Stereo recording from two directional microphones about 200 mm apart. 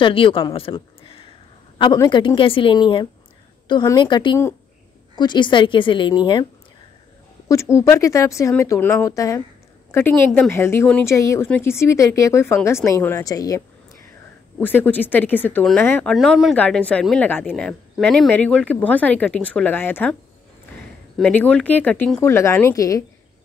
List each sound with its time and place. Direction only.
0.0 s a woman's voice: 25° left (ahead or behind)
7.4 s speech: 15° left (ahead or behind)
14.6 s speech: 10° left (ahead or behind)
21.2 s speech: 5° left (ahead or behind)